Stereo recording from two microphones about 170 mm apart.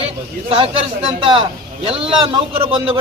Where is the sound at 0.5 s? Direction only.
30° right (ahead or behind).